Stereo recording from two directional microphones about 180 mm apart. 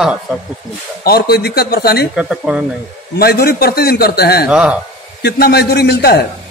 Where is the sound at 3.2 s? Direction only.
60° left (ahead or behind).